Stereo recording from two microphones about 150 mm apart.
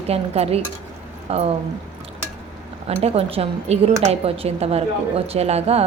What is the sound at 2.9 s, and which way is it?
A woman's voice, 45° right (ahead or behind).